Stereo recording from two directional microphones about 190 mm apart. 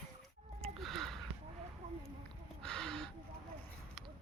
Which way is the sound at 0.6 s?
Centre (ahead or behind).